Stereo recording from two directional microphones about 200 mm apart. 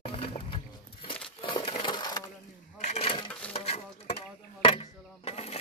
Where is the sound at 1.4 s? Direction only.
25° left (ahead or behind).